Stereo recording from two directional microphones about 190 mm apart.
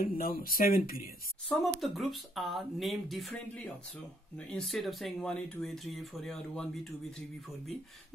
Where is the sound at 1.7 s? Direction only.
Centre (ahead or behind).